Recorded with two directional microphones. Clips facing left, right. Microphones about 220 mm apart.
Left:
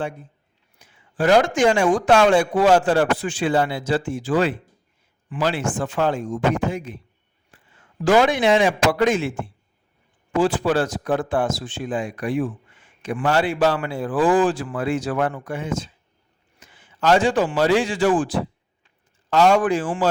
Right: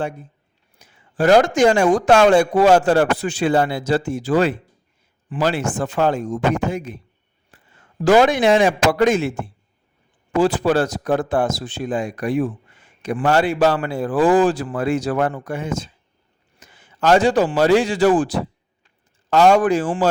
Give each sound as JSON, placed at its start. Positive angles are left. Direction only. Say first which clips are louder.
{"t": 0.8, "sound": "a man's voice", "louder": "right 3 dB", "side_deg": -40}